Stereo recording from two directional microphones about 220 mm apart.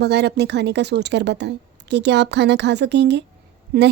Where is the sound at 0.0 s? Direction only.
50° right (ahead or behind).